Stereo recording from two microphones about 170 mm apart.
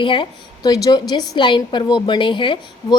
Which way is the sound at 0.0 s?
30° left (ahead or behind).